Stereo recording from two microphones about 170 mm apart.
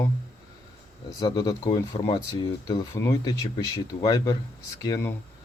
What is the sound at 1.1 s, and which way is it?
Speech, 20° left (ahead or behind).